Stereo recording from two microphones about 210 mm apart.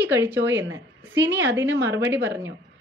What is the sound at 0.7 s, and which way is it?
A woman's voice, 60° right (ahead or behind).